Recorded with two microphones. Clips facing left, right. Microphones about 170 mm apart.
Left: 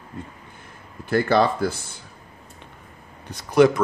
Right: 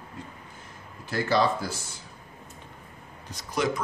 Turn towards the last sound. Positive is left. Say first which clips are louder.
# left 12 dB
turn(degrees=65)  # may be behind; listen again after turning